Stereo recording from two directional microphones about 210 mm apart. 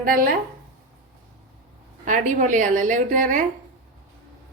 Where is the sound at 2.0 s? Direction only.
35° right (ahead or behind).